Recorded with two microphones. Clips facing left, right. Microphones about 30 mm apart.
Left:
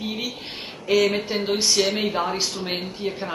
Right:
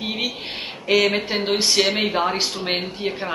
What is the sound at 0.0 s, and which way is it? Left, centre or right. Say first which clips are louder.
A man's voice: right 3 dB; right.